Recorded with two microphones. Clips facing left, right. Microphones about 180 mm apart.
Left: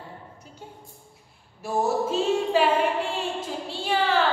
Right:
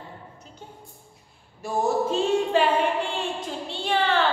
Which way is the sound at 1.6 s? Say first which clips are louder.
Right 1 dB; 5° left (ahead or behind).